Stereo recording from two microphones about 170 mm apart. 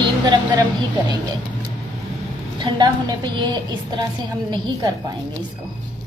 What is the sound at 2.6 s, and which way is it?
A woman's voice, 25° right (ahead or behind).